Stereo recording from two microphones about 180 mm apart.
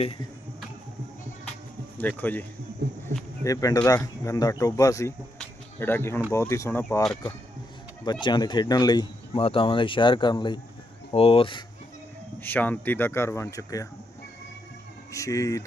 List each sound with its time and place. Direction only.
2.0 s speech: 10° left (ahead or behind)
2.8 s a sound: 65° right (ahead or behind)
3.4 s speech: 20° left (ahead or behind)
5.4 s a sound: 10° left (ahead or behind)
6.3 s speech: 15° left (ahead or behind)
8.0 s speech: 25° left (ahead or behind)
12.4 s speech: 10° left (ahead or behind)
15.1 s speech: 15° left (ahead or behind)